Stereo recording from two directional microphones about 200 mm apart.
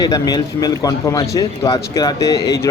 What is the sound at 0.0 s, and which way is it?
Speech, 20° left (ahead or behind).